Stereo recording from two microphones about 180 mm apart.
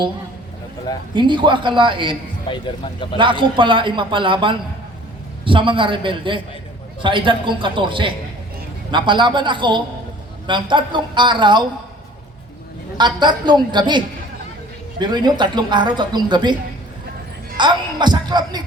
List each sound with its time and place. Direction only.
1.1 s speech: 25° right (ahead or behind)
2.5 s speech: 30° left (ahead or behind)
3.2 s speech: 25° right (ahead or behind)
13.0 s speech: 25° right (ahead or behind)
17.6 s speech: 25° right (ahead or behind)